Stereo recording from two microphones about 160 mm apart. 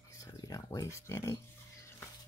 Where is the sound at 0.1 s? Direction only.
20° left (ahead or behind).